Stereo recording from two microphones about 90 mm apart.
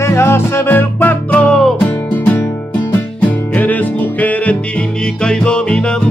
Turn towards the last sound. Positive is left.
turn(degrees=10)  # may be behind; listen again after turning